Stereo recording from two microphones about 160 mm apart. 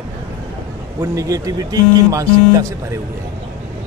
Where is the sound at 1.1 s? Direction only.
20° right (ahead or behind).